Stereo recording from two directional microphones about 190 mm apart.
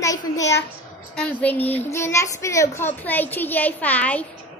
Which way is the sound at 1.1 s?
5° left (ahead or behind).